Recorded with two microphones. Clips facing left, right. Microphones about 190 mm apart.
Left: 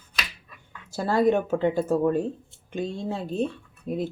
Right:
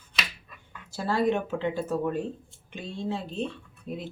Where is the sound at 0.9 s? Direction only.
45° left (ahead or behind).